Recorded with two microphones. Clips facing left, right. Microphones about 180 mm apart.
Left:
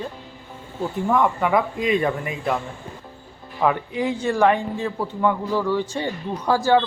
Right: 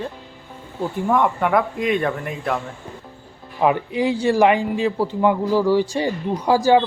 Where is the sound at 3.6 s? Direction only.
15° right (ahead or behind).